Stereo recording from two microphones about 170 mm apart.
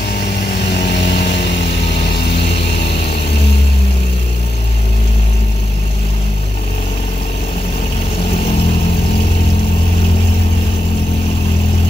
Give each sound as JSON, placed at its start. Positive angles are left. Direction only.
{"t": 0.7, "sound": "vehicle", "side_deg": 80}